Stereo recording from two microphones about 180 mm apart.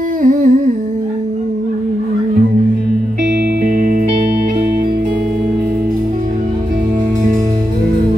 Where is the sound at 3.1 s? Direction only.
70° right (ahead or behind).